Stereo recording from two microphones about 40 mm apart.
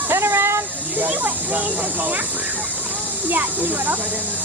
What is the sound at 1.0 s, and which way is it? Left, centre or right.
Speech, right.